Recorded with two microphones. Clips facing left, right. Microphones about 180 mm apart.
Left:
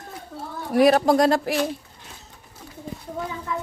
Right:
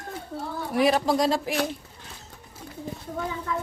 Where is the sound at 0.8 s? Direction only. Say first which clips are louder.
Left 5 dB; 55° left (ahead or behind).